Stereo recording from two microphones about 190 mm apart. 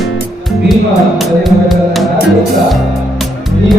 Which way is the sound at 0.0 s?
Centre (ahead or behind).